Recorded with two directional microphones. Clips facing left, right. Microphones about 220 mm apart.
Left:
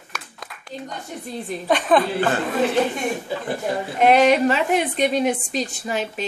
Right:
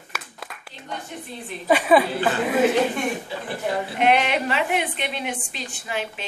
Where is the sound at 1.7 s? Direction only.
5° right (ahead or behind).